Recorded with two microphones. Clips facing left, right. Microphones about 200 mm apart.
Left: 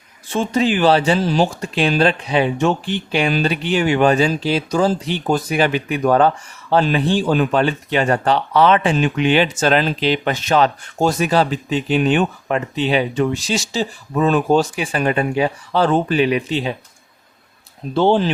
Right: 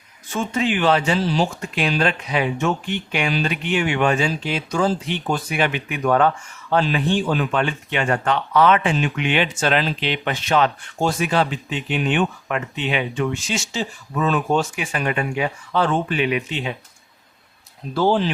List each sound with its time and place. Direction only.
0.3 s speech: 35° left (ahead or behind)
1.2 s speech: 45° left (ahead or behind)
1.6 s speech: 30° left (ahead or behind)
17.9 s speech: 25° left (ahead or behind)